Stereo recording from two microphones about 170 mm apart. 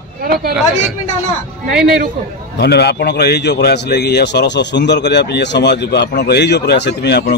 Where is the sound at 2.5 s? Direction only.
70° left (ahead or behind).